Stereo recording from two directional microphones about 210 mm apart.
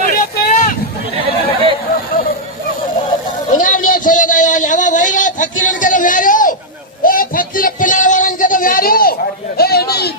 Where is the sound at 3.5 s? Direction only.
40° left (ahead or behind).